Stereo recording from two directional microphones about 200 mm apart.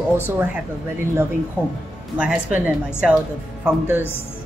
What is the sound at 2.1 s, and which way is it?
Speech, 5° right (ahead or behind).